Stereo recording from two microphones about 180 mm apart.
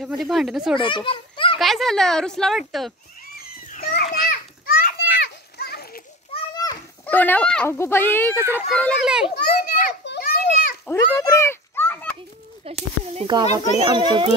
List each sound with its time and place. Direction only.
0.2 s speech: centre (ahead or behind)
0.7 s a child's voice: 25° left (ahead or behind)
1.6 s speech: centre (ahead or behind)
3.6 s children playing: 50° left (ahead or behind)
6.3 s children playing: 20° left (ahead or behind)
7.1 s speech: 10° left (ahead or behind)
8.4 s a child's voice: 15° right (ahead or behind)
8.6 s speech: 5° left (ahead or behind)
9.3 s children playing: 60° left (ahead or behind)
10.9 s children playing: 15° left (ahead or behind)
12.7 s a child's voice: 30° right (ahead or behind)